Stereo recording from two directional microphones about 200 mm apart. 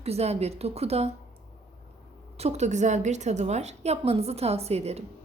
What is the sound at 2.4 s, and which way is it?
A woman's voice, 35° right (ahead or behind).